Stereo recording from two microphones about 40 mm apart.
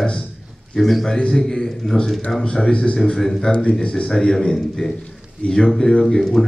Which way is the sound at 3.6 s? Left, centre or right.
Left.